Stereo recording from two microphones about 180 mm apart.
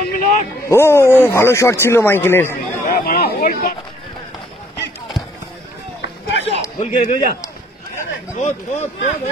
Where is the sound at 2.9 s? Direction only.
55° left (ahead or behind).